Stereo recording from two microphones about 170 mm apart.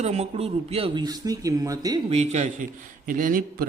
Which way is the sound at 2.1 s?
40° right (ahead or behind).